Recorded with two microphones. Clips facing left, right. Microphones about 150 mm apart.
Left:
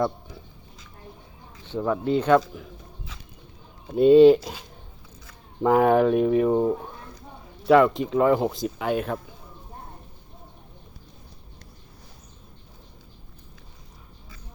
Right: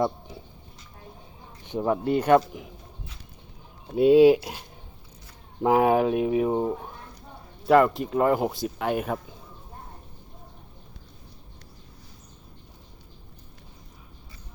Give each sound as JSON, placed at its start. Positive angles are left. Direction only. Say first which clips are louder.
{"t": 1.6, "sound": "speech", "louder": "even", "side_deg": -20}
{"t": 3.9, "sound": "speech", "louder": "left 2 dB", "side_deg": -5}
{"t": 5.6, "sound": "speech", "louder": "left 2 dB", "side_deg": -5}
{"t": 7.7, "sound": "speech", "louder": "left 2 dB", "side_deg": 0}